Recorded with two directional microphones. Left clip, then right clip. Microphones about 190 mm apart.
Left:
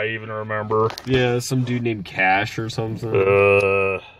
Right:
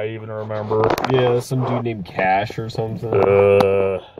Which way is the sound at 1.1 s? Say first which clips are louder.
Right 3 dB; 25° left (ahead or behind).